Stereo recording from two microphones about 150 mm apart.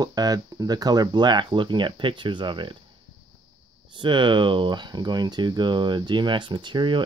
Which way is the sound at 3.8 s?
30° right (ahead or behind).